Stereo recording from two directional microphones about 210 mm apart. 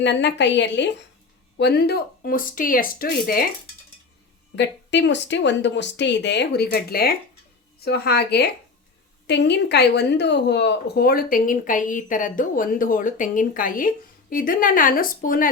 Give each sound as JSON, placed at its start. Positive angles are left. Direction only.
{"t": 0.0, "sound": "speech", "side_deg": 55}
{"t": 4.5, "sound": "speech", "side_deg": 55}